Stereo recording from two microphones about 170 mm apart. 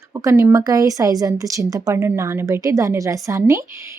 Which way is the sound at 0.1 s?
20° right (ahead or behind).